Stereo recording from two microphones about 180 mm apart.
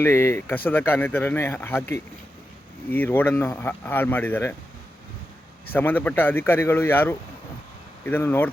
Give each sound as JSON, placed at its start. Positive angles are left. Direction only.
{"t": 0.0, "sound": "speech", "side_deg": 15}
{"t": 5.7, "sound": "speech", "side_deg": 10}